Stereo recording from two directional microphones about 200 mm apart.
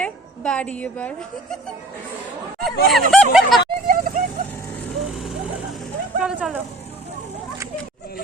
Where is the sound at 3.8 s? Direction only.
45° right (ahead or behind).